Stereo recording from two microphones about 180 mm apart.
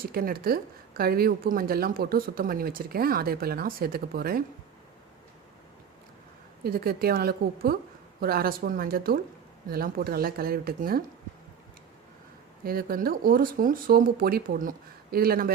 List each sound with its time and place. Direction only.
0.0 s a woman's voice: 55° right (ahead or behind)
6.7 s a woman's voice: 55° right (ahead or behind)
12.6 s speech: 55° right (ahead or behind)